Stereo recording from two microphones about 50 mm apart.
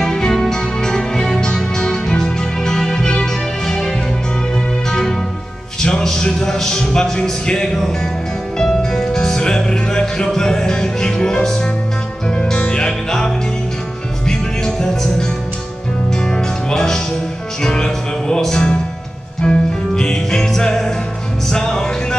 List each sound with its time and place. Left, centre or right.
0.0 s music: centre
5.8 s music: centre